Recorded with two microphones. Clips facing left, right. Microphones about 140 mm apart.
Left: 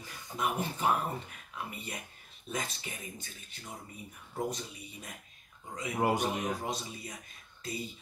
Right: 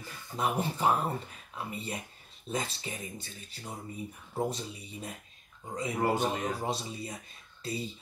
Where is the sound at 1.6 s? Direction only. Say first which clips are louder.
Right 4 dB; 30° right (ahead or behind).